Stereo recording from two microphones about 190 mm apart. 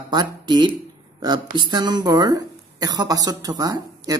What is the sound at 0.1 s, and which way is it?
Speech, 25° right (ahead or behind).